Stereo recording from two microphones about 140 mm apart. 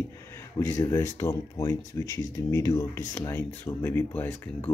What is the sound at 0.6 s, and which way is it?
Speech, 20° left (ahead or behind).